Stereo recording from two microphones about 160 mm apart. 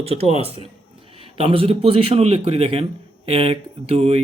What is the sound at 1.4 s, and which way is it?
Speech, 35° right (ahead or behind).